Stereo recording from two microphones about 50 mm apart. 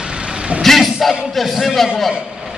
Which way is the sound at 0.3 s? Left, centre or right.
Centre.